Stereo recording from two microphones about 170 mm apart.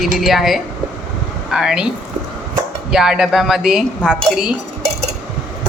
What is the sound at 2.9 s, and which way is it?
Speech, 5° right (ahead or behind).